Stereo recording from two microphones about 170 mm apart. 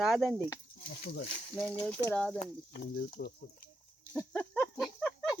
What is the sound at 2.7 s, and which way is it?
Speech, 75° left (ahead or behind).